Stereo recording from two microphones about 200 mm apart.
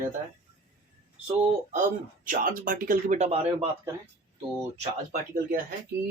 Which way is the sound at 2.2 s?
45° right (ahead or behind).